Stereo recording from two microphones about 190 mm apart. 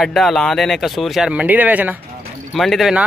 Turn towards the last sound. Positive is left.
turn(degrees=0)  # may be behind; listen again after turning